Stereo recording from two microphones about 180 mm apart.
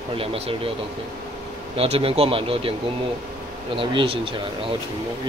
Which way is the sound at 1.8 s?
35° right (ahead or behind).